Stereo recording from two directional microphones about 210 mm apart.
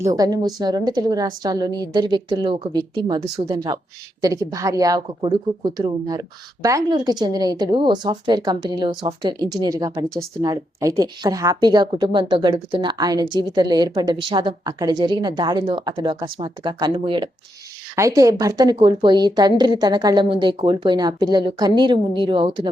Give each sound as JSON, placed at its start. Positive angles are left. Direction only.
{"t": 0.0, "sound": "a woman's voice", "side_deg": -15}